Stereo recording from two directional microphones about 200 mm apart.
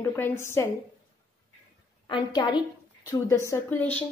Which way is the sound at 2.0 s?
20° left (ahead or behind).